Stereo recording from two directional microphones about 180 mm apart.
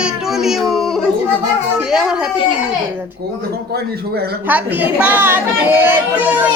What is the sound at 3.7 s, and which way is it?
Speech, 60° right (ahead or behind).